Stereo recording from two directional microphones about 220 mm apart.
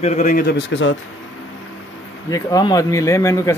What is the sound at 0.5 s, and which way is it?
Speech, 55° left (ahead or behind).